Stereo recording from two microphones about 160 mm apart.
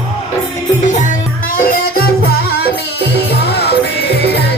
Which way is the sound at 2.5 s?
80° left.